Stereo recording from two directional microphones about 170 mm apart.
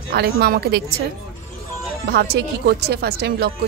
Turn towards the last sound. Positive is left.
turn(degrees=-70)  # may be behind; listen again after turning